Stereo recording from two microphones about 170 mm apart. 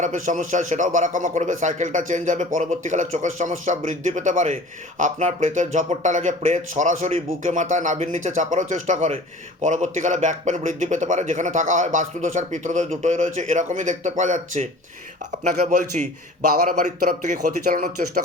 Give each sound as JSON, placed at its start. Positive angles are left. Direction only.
{"t": 0.0, "sound": "a man's voice", "side_deg": -45}